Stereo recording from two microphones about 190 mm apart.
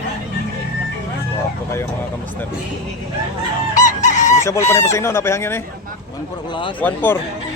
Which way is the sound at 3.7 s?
40° left (ahead or behind).